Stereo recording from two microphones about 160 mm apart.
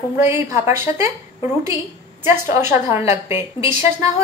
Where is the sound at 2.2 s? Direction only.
15° right (ahead or behind).